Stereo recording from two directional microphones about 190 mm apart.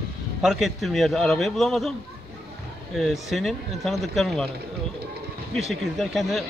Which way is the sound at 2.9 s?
Centre (ahead or behind).